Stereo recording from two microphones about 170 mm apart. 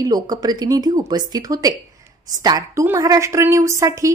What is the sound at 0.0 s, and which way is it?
A woman's voice, 20° right (ahead or behind).